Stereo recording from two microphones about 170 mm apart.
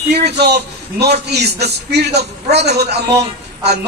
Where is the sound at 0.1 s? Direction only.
75° right (ahead or behind).